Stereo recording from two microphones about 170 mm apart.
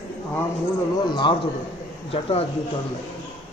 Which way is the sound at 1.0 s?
25° left (ahead or behind).